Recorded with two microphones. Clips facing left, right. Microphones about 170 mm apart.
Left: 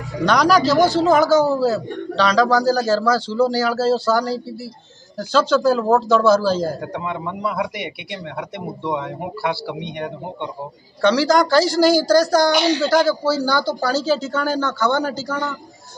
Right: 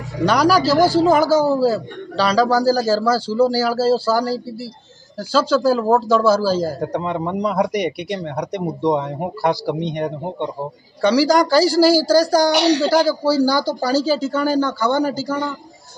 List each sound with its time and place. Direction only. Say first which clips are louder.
0.2 s a man's voice: even; 10° right (ahead or behind)
6.8 s speech: right 5 dB; 40° right (ahead or behind)
11.0 s a man's voice: right 1 dB; 10° right (ahead or behind)
12.5 s a woman's voice: right 2 dB; 75° right (ahead or behind)
12.9 s a man's voice: right 1 dB; 10° right (ahead or behind)